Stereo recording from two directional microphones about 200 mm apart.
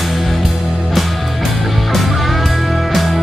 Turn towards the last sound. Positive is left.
turn(degrees=0)  # may be behind; listen again after turning